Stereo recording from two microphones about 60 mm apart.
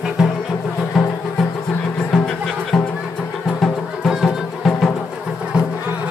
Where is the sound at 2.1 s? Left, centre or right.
Centre.